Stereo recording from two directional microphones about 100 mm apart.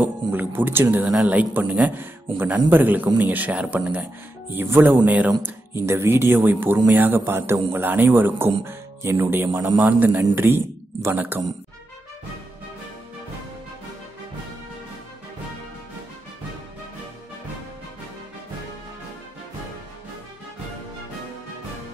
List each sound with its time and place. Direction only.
0.0 s a man's voice: 20° right (ahead or behind)